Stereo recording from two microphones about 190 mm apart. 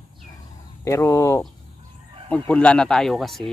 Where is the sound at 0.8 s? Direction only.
15° left (ahead or behind).